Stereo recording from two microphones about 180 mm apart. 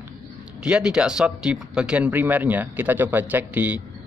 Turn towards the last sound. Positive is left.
turn(degrees=-10)  # may be behind; listen again after turning